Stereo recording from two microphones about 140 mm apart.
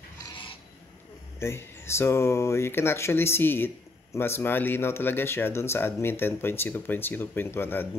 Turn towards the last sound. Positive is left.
turn(degrees=15)  # may be behind; listen again after turning